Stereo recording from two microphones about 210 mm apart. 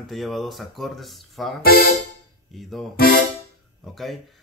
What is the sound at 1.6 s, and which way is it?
Speech, 45° left (ahead or behind).